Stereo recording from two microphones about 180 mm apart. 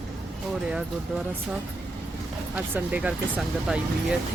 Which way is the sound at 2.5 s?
10° right (ahead or behind).